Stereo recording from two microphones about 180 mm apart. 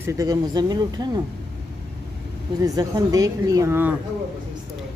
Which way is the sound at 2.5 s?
20° right (ahead or behind).